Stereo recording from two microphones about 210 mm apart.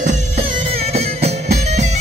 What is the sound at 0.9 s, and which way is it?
Music, 30° right (ahead or behind).